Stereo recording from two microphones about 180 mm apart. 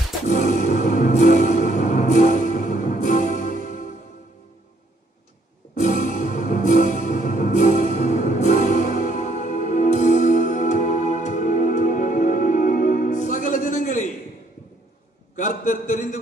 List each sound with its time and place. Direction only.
0.3 s music: 45° left (ahead or behind)
5.8 s music: 45° left (ahead or behind)
15.3 s a sound: 45° left (ahead or behind)